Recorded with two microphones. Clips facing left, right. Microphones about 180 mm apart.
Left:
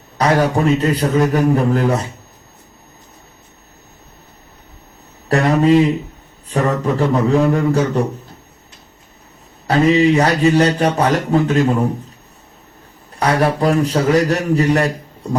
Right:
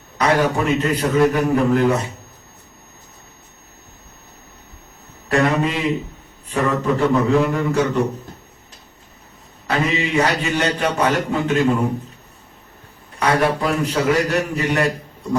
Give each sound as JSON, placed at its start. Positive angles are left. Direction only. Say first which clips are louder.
{"t": 0.2, "sound": "a man's voice", "louder": "left 3 dB", "side_deg": 35}
{"t": 5.3, "sound": "a sound", "louder": "left 6 dB", "side_deg": 35}
{"t": 6.5, "sound": "a man's voice", "louder": "left 2 dB", "side_deg": 35}
{"t": 9.6, "sound": "a man's voice", "louder": "left 9 dB", "side_deg": 35}
{"t": 13.1, "sound": "a man's voice", "louder": "left 2 dB", "side_deg": 35}